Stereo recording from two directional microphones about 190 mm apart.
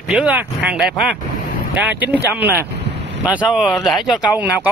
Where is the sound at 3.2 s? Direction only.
5° right (ahead or behind).